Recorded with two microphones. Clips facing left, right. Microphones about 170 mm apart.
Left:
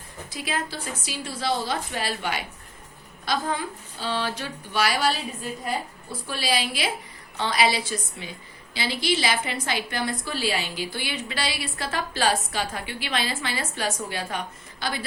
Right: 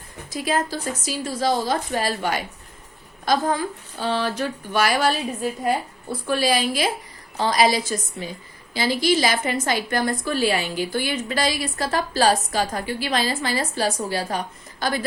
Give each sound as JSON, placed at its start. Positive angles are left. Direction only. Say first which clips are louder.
{"t": 0.3, "sound": "a woman's voice", "louder": "right 7 dB", "side_deg": -40}
{"t": 6.2, "sound": "a woman's voice", "louder": "right 6 dB", "side_deg": -45}